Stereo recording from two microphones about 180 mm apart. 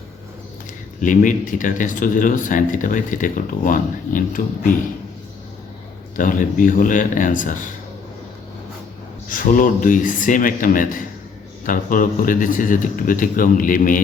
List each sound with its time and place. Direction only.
1.0 s speech: 45° left (ahead or behind)
6.1 s speech: 45° left (ahead or behind)
9.3 s speech: 50° left (ahead or behind)